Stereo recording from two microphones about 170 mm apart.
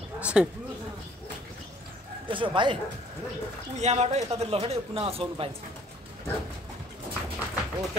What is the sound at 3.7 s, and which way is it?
Speech, 40° right (ahead or behind).